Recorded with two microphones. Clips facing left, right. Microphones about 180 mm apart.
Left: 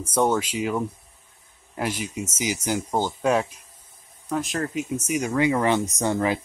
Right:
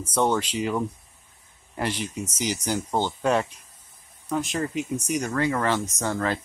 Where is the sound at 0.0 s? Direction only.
10° left (ahead or behind).